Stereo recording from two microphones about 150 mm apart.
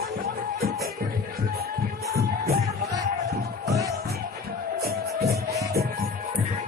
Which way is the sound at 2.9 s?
25° right (ahead or behind).